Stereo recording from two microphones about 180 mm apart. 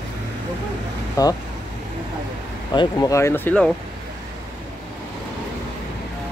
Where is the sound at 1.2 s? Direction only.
20° left (ahead or behind).